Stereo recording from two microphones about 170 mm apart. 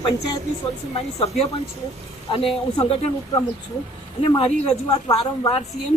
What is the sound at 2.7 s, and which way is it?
Speech, 35° left (ahead or behind).